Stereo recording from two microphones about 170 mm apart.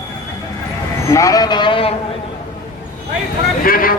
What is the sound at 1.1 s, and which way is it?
Speech, 20° left (ahead or behind).